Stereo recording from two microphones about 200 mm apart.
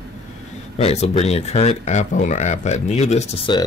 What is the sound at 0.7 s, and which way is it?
Speech, 30° left (ahead or behind).